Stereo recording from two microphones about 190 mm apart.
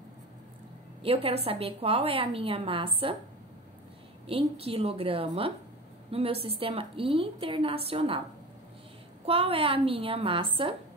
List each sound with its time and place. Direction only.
1.0 s a woman's voice: 30° right (ahead or behind)
4.3 s a woman's voice: 30° right (ahead or behind)
9.2 s a woman's voice: 30° right (ahead or behind)